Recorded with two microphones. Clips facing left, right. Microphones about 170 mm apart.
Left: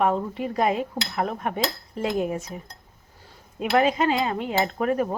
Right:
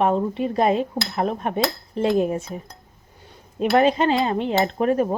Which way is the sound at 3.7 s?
30° right (ahead or behind).